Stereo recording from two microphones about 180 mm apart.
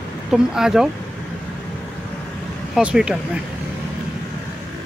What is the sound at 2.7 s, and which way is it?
Speech, 5° right (ahead or behind).